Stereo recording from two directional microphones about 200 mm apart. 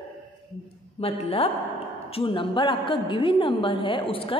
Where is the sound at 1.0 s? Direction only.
30° left (ahead or behind).